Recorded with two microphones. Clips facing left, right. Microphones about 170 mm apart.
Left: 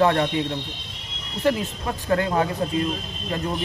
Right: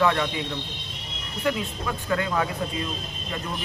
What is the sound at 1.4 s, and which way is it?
Speech, 30° left (ahead or behind).